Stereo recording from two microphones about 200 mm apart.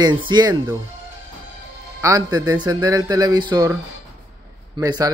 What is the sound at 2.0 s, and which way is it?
Speech, 15° right (ahead or behind).